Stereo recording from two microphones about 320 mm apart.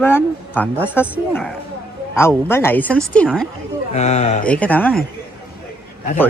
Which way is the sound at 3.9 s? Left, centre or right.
Left.